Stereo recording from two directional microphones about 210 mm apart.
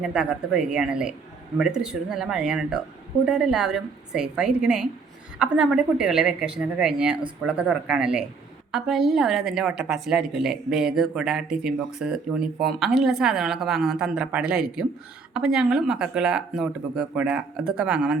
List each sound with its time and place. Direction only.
0.0 s a woman's voice: 5° right (ahead or behind)